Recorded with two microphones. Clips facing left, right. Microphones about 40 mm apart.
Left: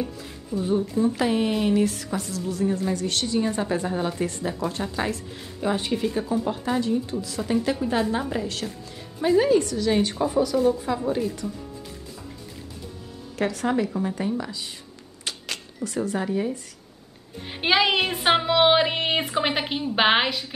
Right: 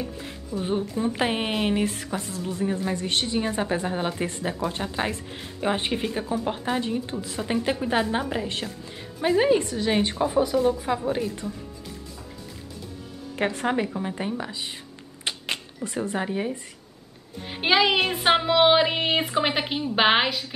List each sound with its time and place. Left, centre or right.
0.6 s a woman's voice: right; by 11.3 s centre
13.4 s speech: right
15.2 s cash register: right
17.5 s speech: centre